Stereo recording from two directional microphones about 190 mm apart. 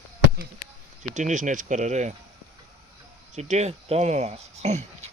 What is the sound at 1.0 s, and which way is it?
Speech, 40° right (ahead or behind).